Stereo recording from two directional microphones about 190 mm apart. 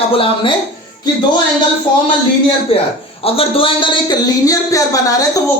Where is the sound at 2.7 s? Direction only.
30° left (ahead or behind).